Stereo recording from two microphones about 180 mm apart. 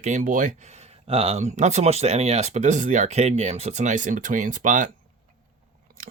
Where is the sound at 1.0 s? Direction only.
35° right (ahead or behind).